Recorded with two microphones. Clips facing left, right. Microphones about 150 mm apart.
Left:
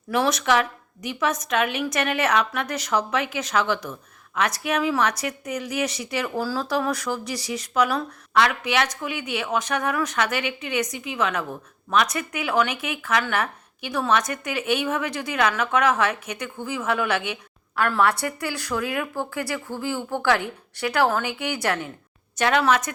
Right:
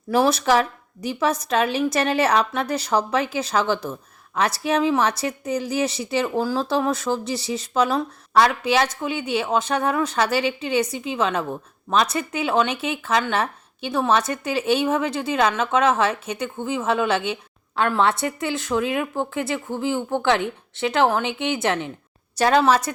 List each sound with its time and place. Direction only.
0.1 s a woman's voice: 30° right (ahead or behind)
22.4 s a woman's voice: 35° right (ahead or behind)